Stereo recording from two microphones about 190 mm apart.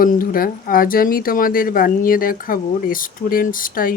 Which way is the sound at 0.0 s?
45° left (ahead or behind).